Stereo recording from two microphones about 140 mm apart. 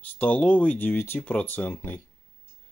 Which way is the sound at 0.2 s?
10° left (ahead or behind).